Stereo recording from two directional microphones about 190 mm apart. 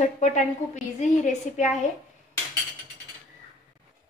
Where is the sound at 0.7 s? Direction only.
40° left (ahead or behind).